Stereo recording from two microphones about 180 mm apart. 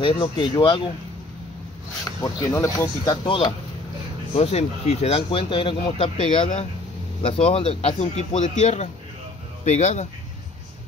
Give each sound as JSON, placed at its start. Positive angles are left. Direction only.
{"t": 0.0, "sound": "speech", "side_deg": 25}
{"t": 2.2, "sound": "speech", "side_deg": 20}
{"t": 3.3, "sound": "speech", "side_deg": 30}